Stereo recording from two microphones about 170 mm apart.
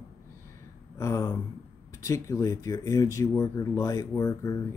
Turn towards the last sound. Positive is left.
turn(degrees=20)  # may be behind; listen again after turning